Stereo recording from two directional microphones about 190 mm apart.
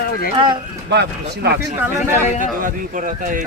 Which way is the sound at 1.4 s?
60° right (ahead or behind).